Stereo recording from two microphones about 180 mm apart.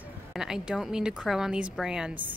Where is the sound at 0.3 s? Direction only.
5° right (ahead or behind).